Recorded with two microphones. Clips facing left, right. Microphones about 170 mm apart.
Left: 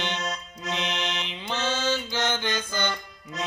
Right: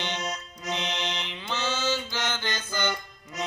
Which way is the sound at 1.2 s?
15° left (ahead or behind).